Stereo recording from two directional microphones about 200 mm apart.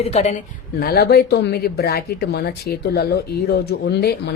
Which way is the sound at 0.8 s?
50° left (ahead or behind).